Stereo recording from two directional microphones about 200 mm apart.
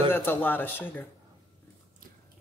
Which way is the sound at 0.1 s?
10° left (ahead or behind).